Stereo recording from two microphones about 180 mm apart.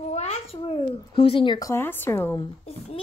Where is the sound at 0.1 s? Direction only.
35° left (ahead or behind); by 2.4 s 15° left (ahead or behind).